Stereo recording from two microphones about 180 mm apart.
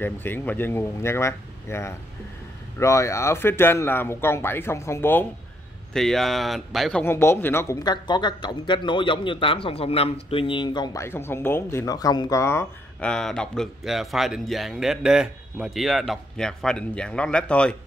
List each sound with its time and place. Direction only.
0.0 s a man's voice: 10° left (ahead or behind)
5.9 s a man's voice: centre (ahead or behind)